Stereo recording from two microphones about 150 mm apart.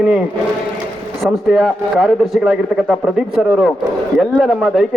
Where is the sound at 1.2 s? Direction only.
5° right (ahead or behind).